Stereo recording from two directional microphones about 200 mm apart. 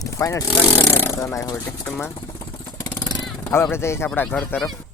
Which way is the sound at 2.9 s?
20° left (ahead or behind).